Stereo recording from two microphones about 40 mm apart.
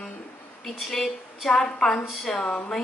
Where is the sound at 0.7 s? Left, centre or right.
Centre.